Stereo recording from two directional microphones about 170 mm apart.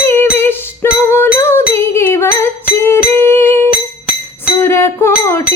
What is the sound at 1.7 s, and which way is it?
Music, 15° left (ahead or behind).